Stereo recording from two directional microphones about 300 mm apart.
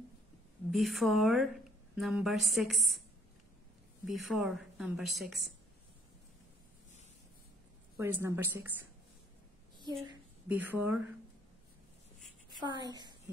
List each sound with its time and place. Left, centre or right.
0.7 s a woman's voice: centre
4.2 s a woman's voice: centre
8.0 s a woman's voice: centre
10.0 s speech: centre
12.5 s a woman's voice: centre